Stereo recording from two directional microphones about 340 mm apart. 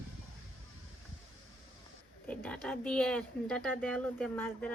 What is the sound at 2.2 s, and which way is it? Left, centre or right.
Speech, centre.